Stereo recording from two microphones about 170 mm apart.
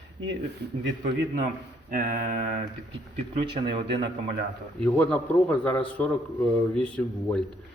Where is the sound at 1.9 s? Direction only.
55° right (ahead or behind).